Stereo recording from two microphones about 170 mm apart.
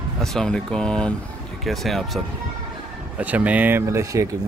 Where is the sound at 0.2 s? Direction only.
5° left (ahead or behind).